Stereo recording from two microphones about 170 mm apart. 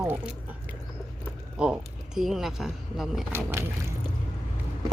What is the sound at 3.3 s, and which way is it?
Speech, 15° right (ahead or behind).